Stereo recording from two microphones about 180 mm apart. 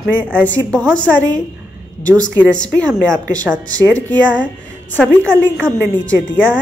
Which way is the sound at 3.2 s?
20° right (ahead or behind).